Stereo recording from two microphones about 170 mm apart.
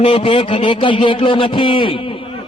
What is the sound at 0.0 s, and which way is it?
A man's voice, 30° left (ahead or behind).